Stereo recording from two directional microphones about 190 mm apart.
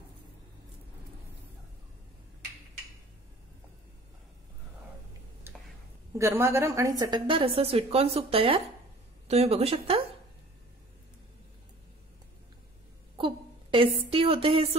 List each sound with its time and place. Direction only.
5.5 s a sound: 10° right (ahead or behind)
6.1 s a woman's voice: 15° right (ahead or behind); by 10.0 s 30° right (ahead or behind)
13.2 s a woman's voice: 25° right (ahead or behind)